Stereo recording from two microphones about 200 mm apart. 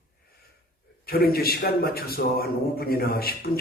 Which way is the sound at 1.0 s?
50° left (ahead or behind).